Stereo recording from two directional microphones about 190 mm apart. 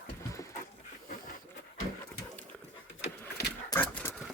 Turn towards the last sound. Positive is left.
turn(degrees=55)  # may be behind; listen again after turning